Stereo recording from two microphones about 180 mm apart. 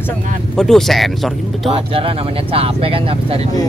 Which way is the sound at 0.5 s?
Centre (ahead or behind).